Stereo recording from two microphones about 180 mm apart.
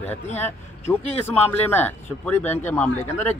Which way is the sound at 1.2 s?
10° left (ahead or behind).